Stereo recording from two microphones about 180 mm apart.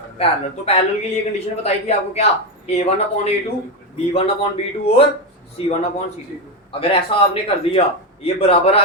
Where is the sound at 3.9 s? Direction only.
35° left (ahead or behind).